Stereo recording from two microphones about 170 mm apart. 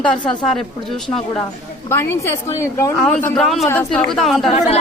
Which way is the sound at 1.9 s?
15° left (ahead or behind).